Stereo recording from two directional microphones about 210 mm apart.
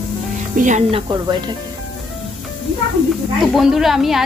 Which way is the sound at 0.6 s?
35° right (ahead or behind).